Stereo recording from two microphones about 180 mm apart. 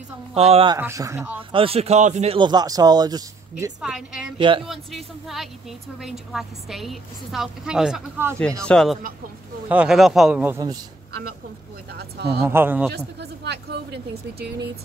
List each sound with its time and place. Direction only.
0.3 s a man's voice: 35° right (ahead or behind)
0.7 s speech: 15° right (ahead or behind)
1.5 s a man's voice: 30° right (ahead or behind)
2.3 s speech: 25° right (ahead or behind)
3.8 s a woman's voice: 5° right (ahead or behind)
4.4 s speech: 30° right (ahead or behind)
4.6 s a woman's voice: centre (ahead or behind)
8.6 s a woman's voice: centre (ahead or behind)
11.9 s speech: 60° right (ahead or behind)
12.4 s speech: 10° right (ahead or behind)
12.9 s speech: 70° right (ahead or behind)